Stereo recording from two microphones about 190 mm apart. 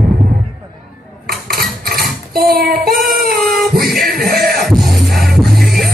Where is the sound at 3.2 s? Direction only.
55° right (ahead or behind).